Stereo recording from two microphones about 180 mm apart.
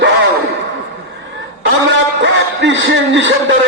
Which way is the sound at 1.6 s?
85° right.